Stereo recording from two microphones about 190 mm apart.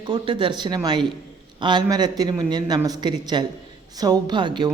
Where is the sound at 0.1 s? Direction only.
25° right (ahead or behind).